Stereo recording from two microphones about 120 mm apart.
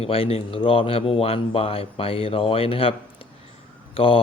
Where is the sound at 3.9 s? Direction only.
50° left (ahead or behind).